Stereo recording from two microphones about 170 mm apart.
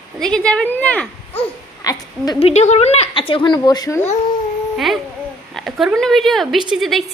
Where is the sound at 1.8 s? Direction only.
20° left (ahead or behind).